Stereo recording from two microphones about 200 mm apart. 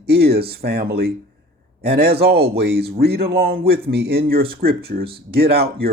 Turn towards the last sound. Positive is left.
turn(degrees=-50)  # may be behind; listen again after turning